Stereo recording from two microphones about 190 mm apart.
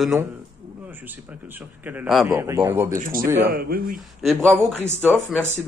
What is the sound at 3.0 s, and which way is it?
Speech, 45° right (ahead or behind).